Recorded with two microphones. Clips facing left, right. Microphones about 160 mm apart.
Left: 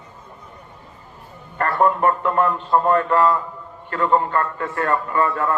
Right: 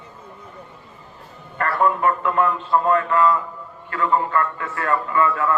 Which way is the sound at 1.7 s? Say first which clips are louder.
Left 2 dB; 40° left (ahead or behind).